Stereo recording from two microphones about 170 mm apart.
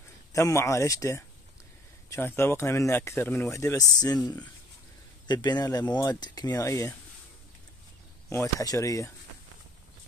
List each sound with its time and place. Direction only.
0.3 s speech: 15° left (ahead or behind)
8.3 s speech: 20° left (ahead or behind)